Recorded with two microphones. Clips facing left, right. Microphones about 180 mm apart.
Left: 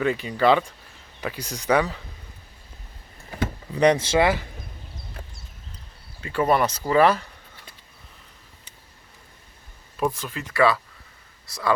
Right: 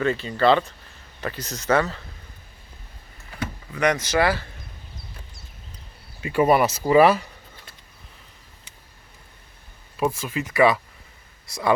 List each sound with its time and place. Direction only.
0.0 s speech: 10° left (ahead or behind)
3.3 s speech: 30° left (ahead or behind)
6.2 s speech: 10° right (ahead or behind)
10.0 s speech: 5° right (ahead or behind)